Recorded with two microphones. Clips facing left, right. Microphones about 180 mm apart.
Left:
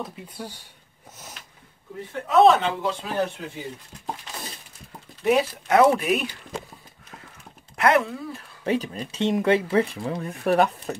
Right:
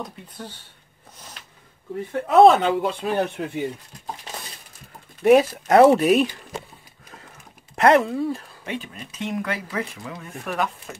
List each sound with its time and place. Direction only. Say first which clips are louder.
0.0 s speech: left 1 dB; 5° left (ahead or behind)
2.2 s speech: right 3 dB; 55° right (ahead or behind)
5.2 s speech: right 6 dB; 50° right (ahead or behind)
7.7 s speech: right 4 dB; 35° right (ahead or behind)
8.6 s speech: left 7 dB; 40° left (ahead or behind)